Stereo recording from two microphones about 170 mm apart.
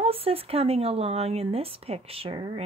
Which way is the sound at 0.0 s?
35° right (ahead or behind).